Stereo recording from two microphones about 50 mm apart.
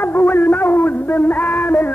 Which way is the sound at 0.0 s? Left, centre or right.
Left.